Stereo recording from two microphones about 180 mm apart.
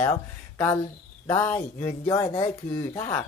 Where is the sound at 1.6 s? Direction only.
40° left (ahead or behind).